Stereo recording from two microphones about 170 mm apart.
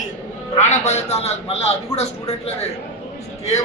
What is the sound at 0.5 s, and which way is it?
A man's voice, 40° left (ahead or behind).